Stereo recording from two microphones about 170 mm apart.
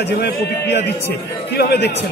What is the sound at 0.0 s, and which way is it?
A man's voice, 80° left.